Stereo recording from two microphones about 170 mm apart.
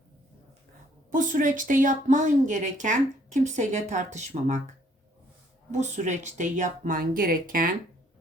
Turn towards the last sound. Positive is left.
turn(degrees=-55)  # may be behind; listen again after turning